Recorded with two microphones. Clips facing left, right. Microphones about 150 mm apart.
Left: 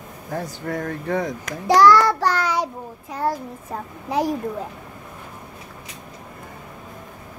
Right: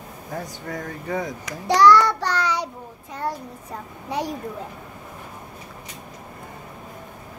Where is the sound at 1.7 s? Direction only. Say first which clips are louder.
Left 1 dB; 50° left (ahead or behind).